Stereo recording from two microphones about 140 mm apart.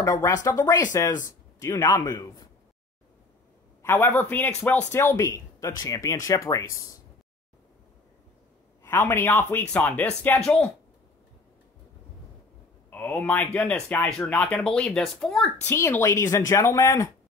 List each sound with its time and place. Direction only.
0.0 s speech: 20° left (ahead or behind)
3.8 s speech: 15° left (ahead or behind)
8.8 s speech: 15° left (ahead or behind)
12.9 s speech: 10° left (ahead or behind)
15.6 s speech: 15° left (ahead or behind)